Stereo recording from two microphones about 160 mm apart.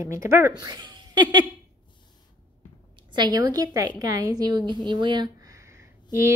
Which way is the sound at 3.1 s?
25° right (ahead or behind).